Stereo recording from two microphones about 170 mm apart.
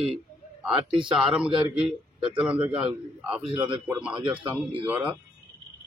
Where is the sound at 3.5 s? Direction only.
25° right (ahead or behind).